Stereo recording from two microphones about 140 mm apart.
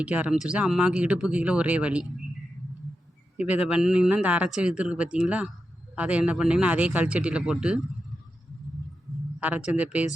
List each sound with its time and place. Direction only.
0.0 s speech: 10° right (ahead or behind)
3.4 s speech: 10° right (ahead or behind)
9.4 s speech: 10° right (ahead or behind)